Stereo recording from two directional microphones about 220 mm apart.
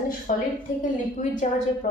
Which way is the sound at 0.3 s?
35° left (ahead or behind).